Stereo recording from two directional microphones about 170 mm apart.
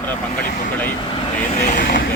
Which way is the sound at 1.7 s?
55° left (ahead or behind).